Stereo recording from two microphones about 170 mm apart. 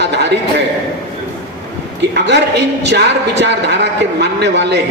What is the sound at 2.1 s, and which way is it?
A man's voice, 90° right.